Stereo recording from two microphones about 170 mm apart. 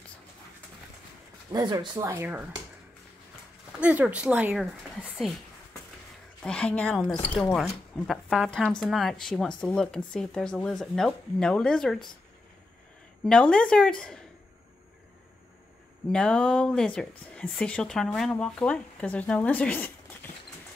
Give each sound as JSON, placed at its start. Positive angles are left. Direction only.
{"t": 1.5, "sound": "speech", "side_deg": -25}
{"t": 2.0, "sound": "speech", "side_deg": -10}
{"t": 3.8, "sound": "speech", "side_deg": -10}
{"t": 6.4, "sound": "speech", "side_deg": 5}
{"t": 13.2, "sound": "speech", "side_deg": 5}
{"t": 16.1, "sound": "speech", "side_deg": 5}